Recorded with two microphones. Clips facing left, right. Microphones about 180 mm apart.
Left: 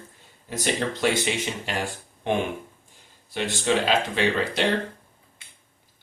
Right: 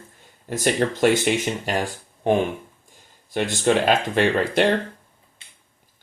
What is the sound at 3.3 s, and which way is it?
Speech, 50° right (ahead or behind).